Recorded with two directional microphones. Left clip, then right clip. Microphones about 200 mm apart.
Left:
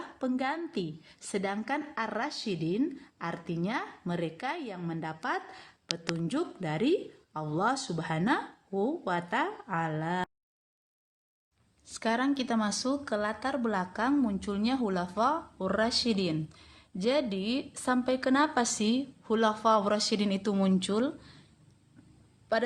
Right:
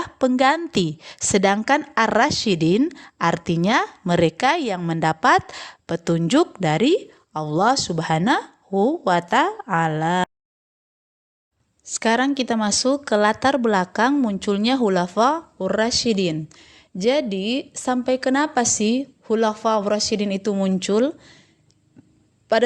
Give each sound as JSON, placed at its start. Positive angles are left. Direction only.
{"t": 0.0, "sound": "a woman's voice", "side_deg": -45}
{"t": 11.9, "sound": "speech", "side_deg": -35}
{"t": 22.5, "sound": "speech", "side_deg": -35}